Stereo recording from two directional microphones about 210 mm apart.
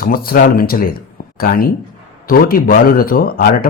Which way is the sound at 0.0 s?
45° left (ahead or behind).